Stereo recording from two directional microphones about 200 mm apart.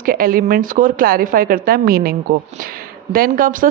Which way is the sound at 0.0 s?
45° right (ahead or behind).